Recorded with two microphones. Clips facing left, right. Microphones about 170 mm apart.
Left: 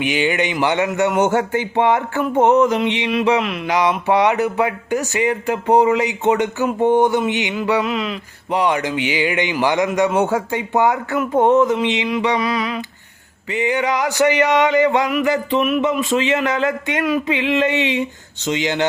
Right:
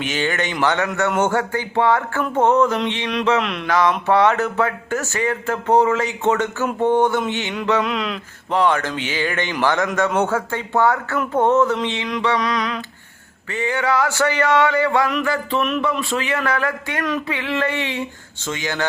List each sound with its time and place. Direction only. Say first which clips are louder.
0.0 s speech: left 4 dB; 15° left (ahead or behind)
7.5 s mantra: right 2 dB; 5° left (ahead or behind)
8.4 s speech: even; 15° left (ahead or behind)